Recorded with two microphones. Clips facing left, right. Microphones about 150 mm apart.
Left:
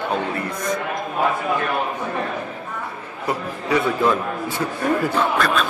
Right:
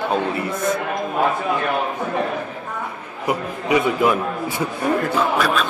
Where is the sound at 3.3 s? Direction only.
15° right (ahead or behind).